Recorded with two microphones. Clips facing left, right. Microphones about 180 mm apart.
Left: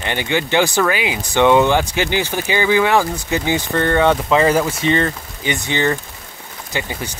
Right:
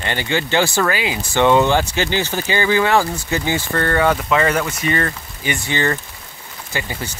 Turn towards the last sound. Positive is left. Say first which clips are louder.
# left 2 dB
turn(degrees=20)  # may be behind; listen again after turning